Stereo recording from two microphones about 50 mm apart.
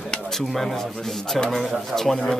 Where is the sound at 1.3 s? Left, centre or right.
Centre.